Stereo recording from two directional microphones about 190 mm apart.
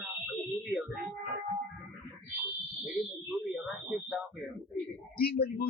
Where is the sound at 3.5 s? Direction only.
5° right (ahead or behind).